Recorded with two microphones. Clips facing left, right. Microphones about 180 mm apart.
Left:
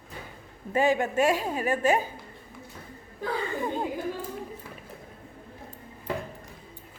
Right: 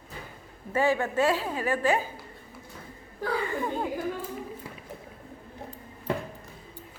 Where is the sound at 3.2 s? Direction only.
20° left (ahead or behind).